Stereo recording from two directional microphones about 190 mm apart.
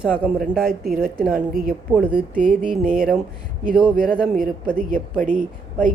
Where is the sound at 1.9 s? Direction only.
10° right (ahead or behind).